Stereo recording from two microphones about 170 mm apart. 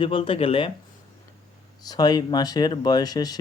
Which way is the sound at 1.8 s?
25° left (ahead or behind).